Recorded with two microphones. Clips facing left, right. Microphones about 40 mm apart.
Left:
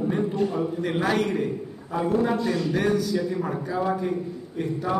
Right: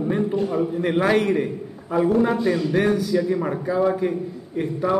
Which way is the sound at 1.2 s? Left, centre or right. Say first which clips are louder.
Right 3 dB; centre.